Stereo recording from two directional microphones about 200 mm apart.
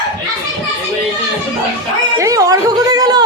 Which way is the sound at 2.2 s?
15° right (ahead or behind).